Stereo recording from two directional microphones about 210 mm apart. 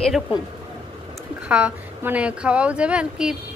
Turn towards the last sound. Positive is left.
turn(degrees=-5)  # may be behind; listen again after turning